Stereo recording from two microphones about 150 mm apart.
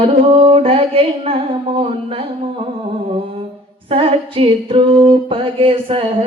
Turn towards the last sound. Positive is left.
turn(degrees=-35)  # may be behind; listen again after turning